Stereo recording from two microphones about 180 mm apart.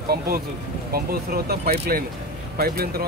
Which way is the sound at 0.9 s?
60° right (ahead or behind).